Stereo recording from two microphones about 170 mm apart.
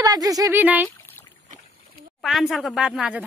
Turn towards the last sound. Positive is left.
turn(degrees=-5)  # may be behind; listen again after turning